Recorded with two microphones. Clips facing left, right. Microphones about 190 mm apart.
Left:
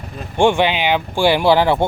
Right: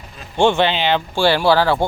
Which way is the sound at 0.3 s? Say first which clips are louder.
Left 1 dB; 15° left (ahead or behind).